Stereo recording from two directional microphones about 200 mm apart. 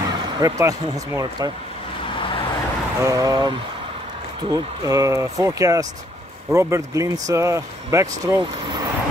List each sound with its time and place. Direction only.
0.4 s speech: 15° right (ahead or behind)
3.0 s speech: 15° right (ahead or behind)
8.4 s vehicle: 20° right (ahead or behind)